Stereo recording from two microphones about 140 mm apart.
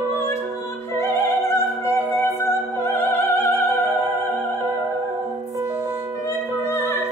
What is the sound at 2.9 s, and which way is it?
Opera, 15° left (ahead or behind).